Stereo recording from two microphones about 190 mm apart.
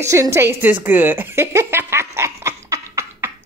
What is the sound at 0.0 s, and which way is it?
A woman's voice, 15° right (ahead or behind).